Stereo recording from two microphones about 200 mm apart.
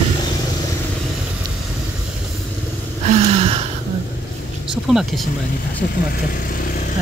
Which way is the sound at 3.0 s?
35° right (ahead or behind).